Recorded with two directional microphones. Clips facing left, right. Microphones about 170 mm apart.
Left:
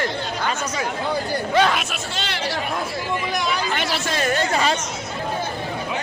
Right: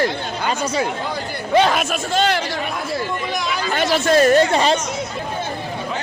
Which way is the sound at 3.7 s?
45° right (ahead or behind).